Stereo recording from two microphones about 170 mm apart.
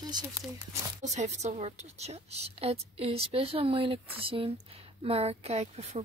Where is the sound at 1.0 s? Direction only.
40° right (ahead or behind).